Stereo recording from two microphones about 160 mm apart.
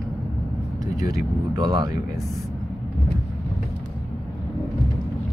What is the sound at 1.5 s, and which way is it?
Speech, 25° right (ahead or behind).